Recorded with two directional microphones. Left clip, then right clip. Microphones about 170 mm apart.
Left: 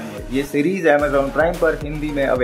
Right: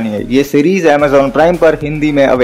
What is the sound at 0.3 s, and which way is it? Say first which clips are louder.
Speech: right 9 dB; 30° right (ahead or behind).